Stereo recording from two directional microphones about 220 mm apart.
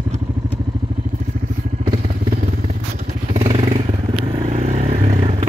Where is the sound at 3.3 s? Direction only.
25° right (ahead or behind).